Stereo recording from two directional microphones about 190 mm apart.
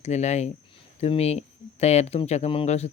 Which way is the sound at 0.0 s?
35° left (ahead or behind).